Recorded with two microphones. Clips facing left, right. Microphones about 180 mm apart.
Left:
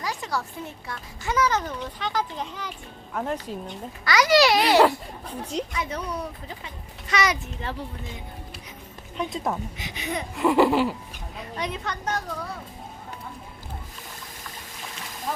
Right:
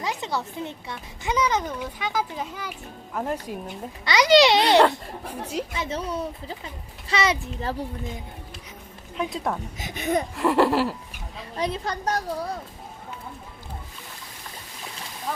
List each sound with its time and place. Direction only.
0.0 s a child's voice: 25° right (ahead or behind)
4.0 s speech: 20° right (ahead or behind)
4.9 s a child's voice: 10° right (ahead or behind)
5.7 s a woman's voice: 25° right (ahead or behind)
9.1 s laughter: centre (ahead or behind)
9.7 s speech: 50° right (ahead or behind)
10.3 s laughter: centre (ahead or behind)
11.3 s a woman's voice: 30° right (ahead or behind)